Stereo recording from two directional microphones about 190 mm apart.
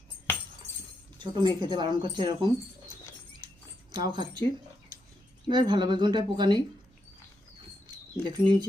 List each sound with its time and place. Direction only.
1.2 s speech: 25° right (ahead or behind)
4.1 s speech: 25° right (ahead or behind)
5.5 s speech: 25° right (ahead or behind)
7.9 s a sound: 25° right (ahead or behind)